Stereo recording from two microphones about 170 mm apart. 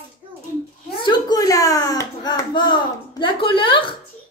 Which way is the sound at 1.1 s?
20° left (ahead or behind).